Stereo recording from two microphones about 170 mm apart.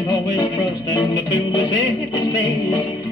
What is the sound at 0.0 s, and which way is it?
Music, 20° left (ahead or behind).